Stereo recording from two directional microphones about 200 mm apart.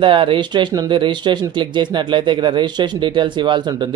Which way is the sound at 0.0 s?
25° right (ahead or behind).